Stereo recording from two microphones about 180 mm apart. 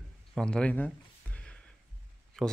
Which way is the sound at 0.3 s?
5° left (ahead or behind).